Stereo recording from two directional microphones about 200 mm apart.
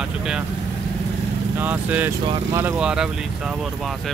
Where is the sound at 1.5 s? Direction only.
10° right (ahead or behind).